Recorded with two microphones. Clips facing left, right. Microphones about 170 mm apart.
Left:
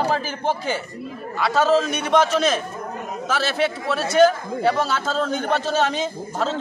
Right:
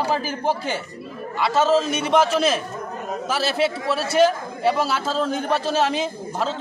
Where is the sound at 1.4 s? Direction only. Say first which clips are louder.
Even; centre (ahead or behind).